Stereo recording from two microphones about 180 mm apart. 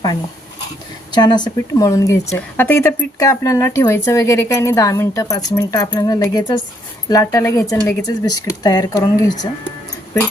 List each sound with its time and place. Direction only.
1.1 s speech: 25° left (ahead or behind)